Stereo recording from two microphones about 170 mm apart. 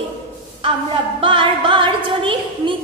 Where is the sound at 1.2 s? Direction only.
30° right (ahead or behind).